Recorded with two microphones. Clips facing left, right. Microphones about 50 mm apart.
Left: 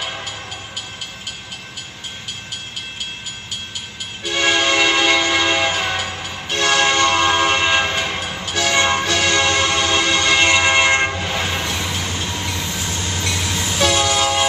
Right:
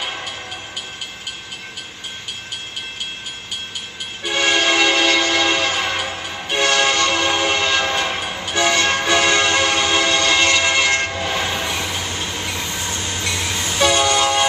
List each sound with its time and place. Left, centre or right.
0.0 s train: centre
4.2 s train: centre
8.2 s train: centre
8.7 s music: left
9.0 s train: centre
11.1 s train: centre